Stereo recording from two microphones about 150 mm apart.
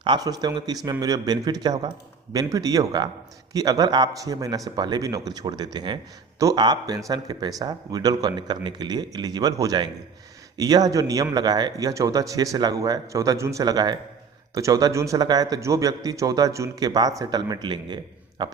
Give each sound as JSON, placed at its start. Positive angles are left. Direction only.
{"t": 0.0, "sound": "a man's voice", "side_deg": -30}